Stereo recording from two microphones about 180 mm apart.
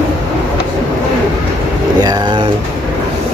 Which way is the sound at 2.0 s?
25° right (ahead or behind).